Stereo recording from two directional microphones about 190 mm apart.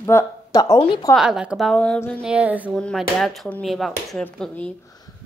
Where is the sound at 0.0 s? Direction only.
15° left (ahead or behind).